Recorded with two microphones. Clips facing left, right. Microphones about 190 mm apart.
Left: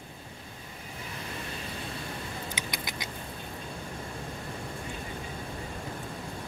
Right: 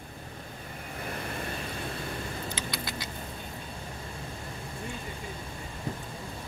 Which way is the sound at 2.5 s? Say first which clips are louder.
Right 1 dB; 15° left (ahead or behind).